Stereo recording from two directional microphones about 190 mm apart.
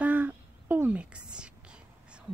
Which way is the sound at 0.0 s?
10° right (ahead or behind).